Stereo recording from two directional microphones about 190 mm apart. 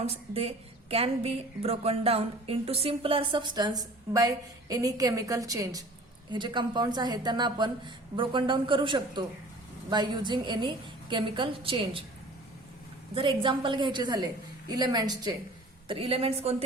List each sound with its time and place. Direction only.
0.0 s a woman's voice: 30° right (ahead or behind)
13.1 s a woman's voice: 25° right (ahead or behind)